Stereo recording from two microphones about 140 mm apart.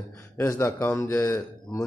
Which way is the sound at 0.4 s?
20° left (ahead or behind).